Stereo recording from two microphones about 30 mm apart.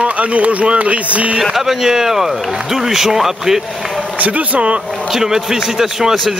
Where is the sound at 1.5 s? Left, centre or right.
Centre.